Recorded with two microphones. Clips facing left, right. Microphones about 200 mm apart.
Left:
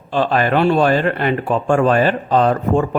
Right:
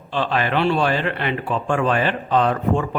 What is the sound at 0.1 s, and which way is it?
Speech, 45° left (ahead or behind).